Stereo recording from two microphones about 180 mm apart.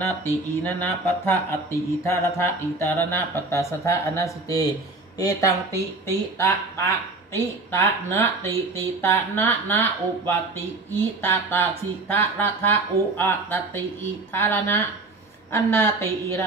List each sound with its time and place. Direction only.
0.0 s speech: 10° left (ahead or behind)